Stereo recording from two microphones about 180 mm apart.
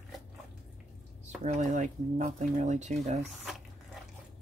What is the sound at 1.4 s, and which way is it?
Speech, 45° right (ahead or behind).